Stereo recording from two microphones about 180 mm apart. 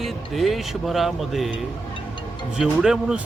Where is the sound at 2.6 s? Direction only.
5° right (ahead or behind).